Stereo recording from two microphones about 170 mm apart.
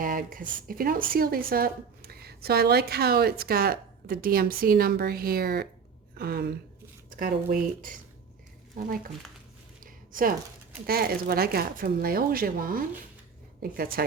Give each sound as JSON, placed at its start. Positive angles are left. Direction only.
{"t": 0.0, "sound": "a woman's voice", "side_deg": -55}
{"t": 7.1, "sound": "a woman's voice", "side_deg": -55}
{"t": 9.8, "sound": "a sound", "side_deg": -55}
{"t": 10.8, "sound": "a woman's voice", "side_deg": -65}